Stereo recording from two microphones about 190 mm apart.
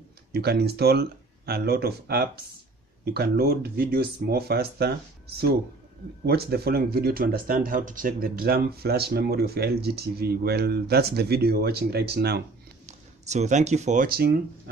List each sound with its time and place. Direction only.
0.3 s speech: 55° right (ahead or behind)
6.2 s speech: 55° right (ahead or behind)
12.8 s speech: 35° right (ahead or behind); by 14.4 s 55° right (ahead or behind)